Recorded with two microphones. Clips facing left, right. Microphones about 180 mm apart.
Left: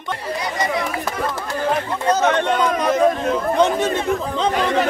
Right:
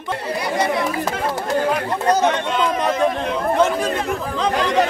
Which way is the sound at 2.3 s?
55° left (ahead or behind).